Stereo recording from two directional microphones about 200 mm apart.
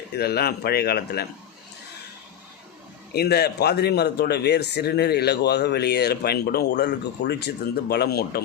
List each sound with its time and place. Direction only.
0.1 s a man's voice: 55° left (ahead or behind)
3.1 s a man's voice: 50° left (ahead or behind)